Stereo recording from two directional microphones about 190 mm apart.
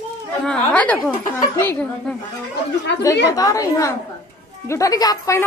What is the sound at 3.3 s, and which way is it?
Speech, 20° left (ahead or behind).